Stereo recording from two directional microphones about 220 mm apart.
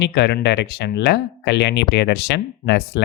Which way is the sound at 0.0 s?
50° left (ahead or behind).